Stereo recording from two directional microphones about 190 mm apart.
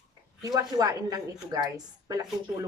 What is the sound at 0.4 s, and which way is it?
A woman's voice, 20° right (ahead or behind).